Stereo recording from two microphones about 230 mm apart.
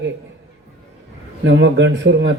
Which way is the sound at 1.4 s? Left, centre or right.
Right.